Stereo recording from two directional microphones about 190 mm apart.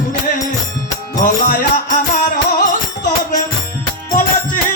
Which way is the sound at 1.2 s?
45° left (ahead or behind).